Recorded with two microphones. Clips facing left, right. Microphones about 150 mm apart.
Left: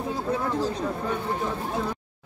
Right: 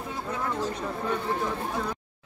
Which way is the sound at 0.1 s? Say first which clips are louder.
Left 4 dB; 35° left (ahead or behind).